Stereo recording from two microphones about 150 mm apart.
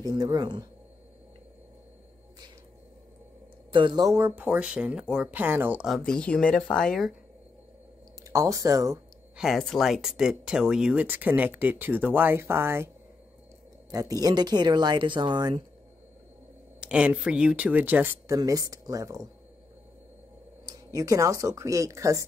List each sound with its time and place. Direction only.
0.0 s speech: 25° right (ahead or behind)
3.7 s speech: 30° right (ahead or behind); by 7.2 s 5° left (ahead or behind)
8.2 s speech: 20° right (ahead or behind)
9.4 s speech: centre (ahead or behind); by 15.6 s 30° right (ahead or behind)
16.8 s speech: 10° right (ahead or behind)
18.3 s speech: 25° right (ahead or behind)
20.6 s speech: 25° right (ahead or behind)